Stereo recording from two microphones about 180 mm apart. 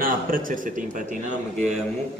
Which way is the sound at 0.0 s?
50° right (ahead or behind).